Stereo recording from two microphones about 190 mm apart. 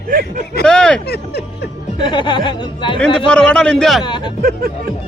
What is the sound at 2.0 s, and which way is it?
Speech, 25° left (ahead or behind).